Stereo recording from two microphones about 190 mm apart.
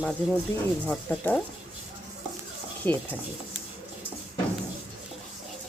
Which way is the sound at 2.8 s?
10° left (ahead or behind).